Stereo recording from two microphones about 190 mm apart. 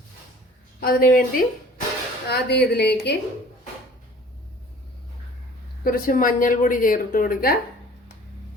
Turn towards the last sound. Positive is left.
turn(degrees=50)  # may be behind; listen again after turning